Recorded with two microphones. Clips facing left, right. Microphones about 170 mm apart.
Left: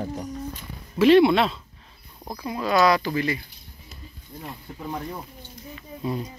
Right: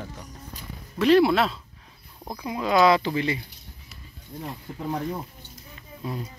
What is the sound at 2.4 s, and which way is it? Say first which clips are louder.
Speech: right 1 dB; 15° right (ahead or behind).